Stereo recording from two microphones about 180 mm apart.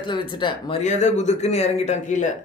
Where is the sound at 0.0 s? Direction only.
25° left (ahead or behind).